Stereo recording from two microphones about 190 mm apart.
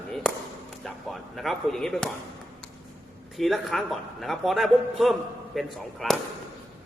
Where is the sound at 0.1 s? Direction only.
Centre (ahead or behind).